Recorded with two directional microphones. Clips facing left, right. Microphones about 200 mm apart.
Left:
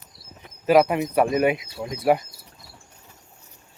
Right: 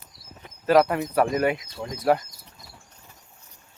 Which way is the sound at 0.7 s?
15° left (ahead or behind).